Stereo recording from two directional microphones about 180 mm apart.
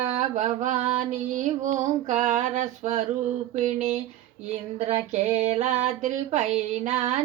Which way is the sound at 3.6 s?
40° right (ahead or behind).